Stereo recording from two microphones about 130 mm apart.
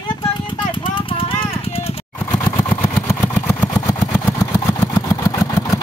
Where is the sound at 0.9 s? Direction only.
45° left (ahead or behind).